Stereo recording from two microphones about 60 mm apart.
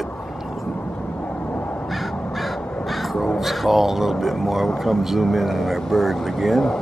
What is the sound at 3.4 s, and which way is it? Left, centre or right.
Speech, centre.